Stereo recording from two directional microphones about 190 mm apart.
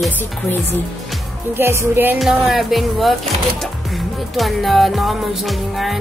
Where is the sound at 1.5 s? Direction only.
10° right (ahead or behind).